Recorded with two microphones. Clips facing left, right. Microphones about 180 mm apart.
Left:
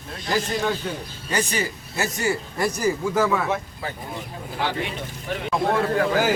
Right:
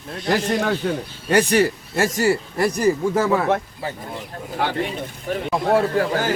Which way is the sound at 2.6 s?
30° right (ahead or behind).